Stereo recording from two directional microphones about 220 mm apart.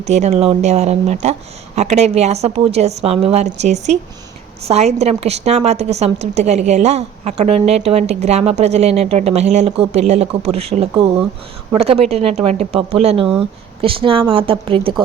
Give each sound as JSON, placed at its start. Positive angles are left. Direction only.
{"t": 0.0, "sound": "a woman's voice", "side_deg": -30}